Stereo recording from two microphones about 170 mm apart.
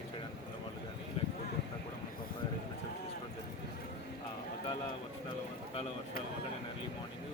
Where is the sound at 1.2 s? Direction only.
35° left (ahead or behind).